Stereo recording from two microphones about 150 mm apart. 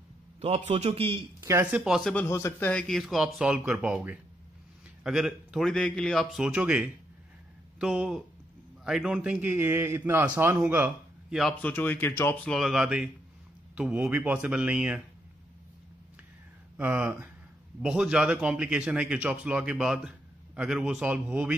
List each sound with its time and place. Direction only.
0.4 s a man's voice: 45° right (ahead or behind)
1.4 s speech: 20° right (ahead or behind)
1.7 s a man's voice: centre (ahead or behind)
2.2 s speech: 20° left (ahead or behind)
2.7 s a man's voice: 5° left (ahead or behind); by 10.6 s 15° right (ahead or behind)
10.7 s a sound: 10° right (ahead or behind)
11.6 s speech: 10° left (ahead or behind)
12.4 s a man's voice: centre (ahead or behind)
16.7 s speech: 10° right (ahead or behind)